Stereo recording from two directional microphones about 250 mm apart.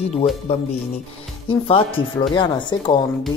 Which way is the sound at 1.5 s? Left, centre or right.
Left.